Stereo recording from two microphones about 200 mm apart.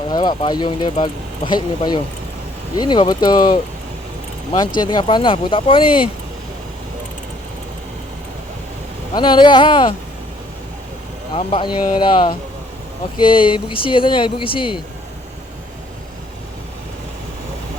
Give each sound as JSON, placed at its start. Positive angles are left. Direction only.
{"t": 0.1, "sound": "speech", "side_deg": 20}
{"t": 4.8, "sound": "speech", "side_deg": 20}
{"t": 9.1, "sound": "speech", "side_deg": 20}
{"t": 11.3, "sound": "speech", "side_deg": 25}